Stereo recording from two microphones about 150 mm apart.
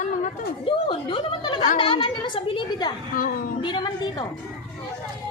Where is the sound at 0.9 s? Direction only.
30° left (ahead or behind).